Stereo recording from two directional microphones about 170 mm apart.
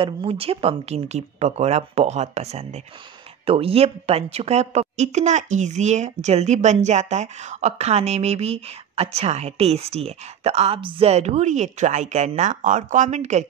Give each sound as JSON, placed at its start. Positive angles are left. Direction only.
{"t": 0.0, "sound": "a woman's voice", "side_deg": -30}